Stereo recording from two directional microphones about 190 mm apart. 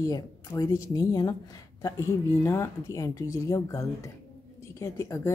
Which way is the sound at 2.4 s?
15° left (ahead or behind).